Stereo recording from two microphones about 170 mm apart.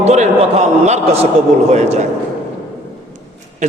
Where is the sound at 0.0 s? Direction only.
40° right (ahead or behind).